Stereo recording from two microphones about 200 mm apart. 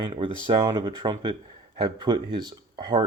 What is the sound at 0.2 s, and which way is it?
Speech, 25° right (ahead or behind).